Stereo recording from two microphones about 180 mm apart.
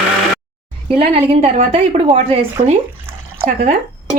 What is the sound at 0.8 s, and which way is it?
A woman's voice, 30° right (ahead or behind).